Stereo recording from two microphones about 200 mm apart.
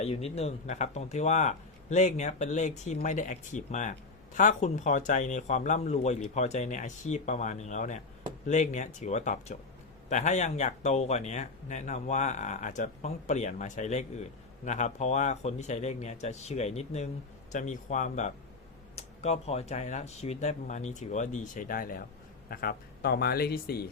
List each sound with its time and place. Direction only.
0.0 s speech: 30° left (ahead or behind); by 23.8 s 50° left (ahead or behind)